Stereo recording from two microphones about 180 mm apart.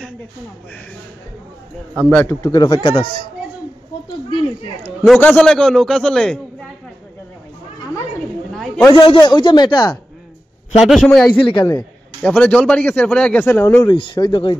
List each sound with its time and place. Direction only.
2.0 s speech: 10° left (ahead or behind); by 3.1 s 25° left (ahead or behind)
5.0 s a man's voice: 5° left (ahead or behind)
8.5 s a sound: 5° left (ahead or behind)
8.9 s speech: 25° left (ahead or behind)
10.8 s a man's voice: centre (ahead or behind)
11.3 s speech: 25° left (ahead or behind)
12.2 s a man's voice: 5° left (ahead or behind)
13.8 s speech: 25° left (ahead or behind)